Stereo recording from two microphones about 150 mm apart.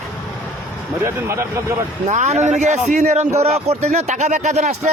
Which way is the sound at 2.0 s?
50° right (ahead or behind).